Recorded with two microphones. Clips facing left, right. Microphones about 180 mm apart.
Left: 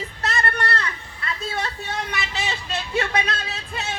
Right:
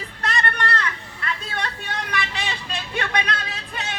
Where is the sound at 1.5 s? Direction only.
25° left (ahead or behind).